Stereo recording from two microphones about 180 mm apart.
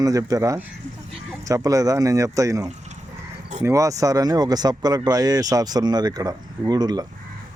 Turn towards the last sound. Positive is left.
turn(degrees=-20)  # may be behind; listen again after turning